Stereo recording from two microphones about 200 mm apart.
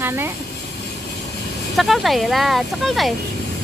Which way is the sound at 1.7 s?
Centre (ahead or behind).